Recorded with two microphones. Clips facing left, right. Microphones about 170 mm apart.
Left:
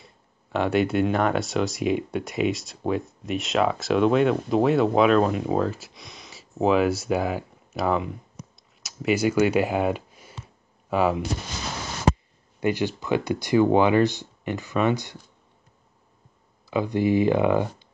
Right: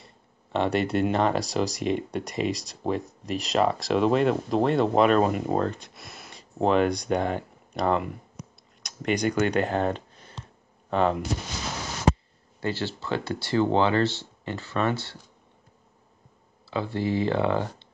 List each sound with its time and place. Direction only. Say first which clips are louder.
0.0 s speech: even; centre (ahead or behind)
8.8 s clicking: left 3 dB; 5° left (ahead or behind)
12.5 s speech: left 5 dB; 15° left (ahead or behind)
16.7 s speech: left 5 dB; 15° left (ahead or behind)